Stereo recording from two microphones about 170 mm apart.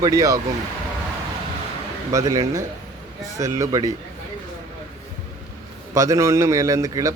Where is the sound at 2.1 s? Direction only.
20° right (ahead or behind).